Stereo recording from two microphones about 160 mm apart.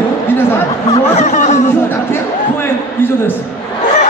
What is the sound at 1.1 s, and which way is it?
Speech, 50° left (ahead or behind).